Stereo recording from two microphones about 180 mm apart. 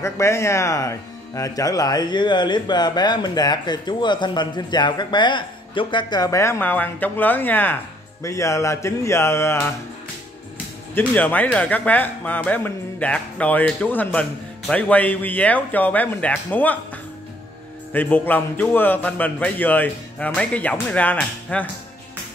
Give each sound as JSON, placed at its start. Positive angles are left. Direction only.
{"t": 0.0, "sound": "speech", "side_deg": 15}
{"t": 11.0, "sound": "a man's voice", "side_deg": 10}
{"t": 17.9, "sound": "a man's voice", "side_deg": 10}